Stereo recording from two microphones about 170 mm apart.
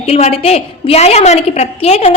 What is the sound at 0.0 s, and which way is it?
A woman's voice, 40° left (ahead or behind).